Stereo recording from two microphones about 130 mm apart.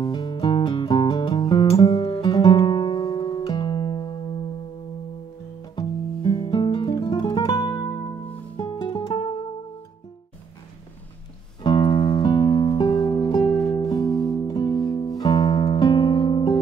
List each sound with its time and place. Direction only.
0.0 s music: 35° left (ahead or behind)
5.8 s music: 35° left (ahead or behind)
11.6 s music: 35° left (ahead or behind)
13.5 s music: 5° left (ahead or behind)
13.7 s music: 35° left (ahead or behind)